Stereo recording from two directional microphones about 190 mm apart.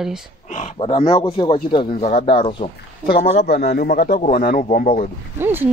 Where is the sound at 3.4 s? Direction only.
60° left (ahead or behind).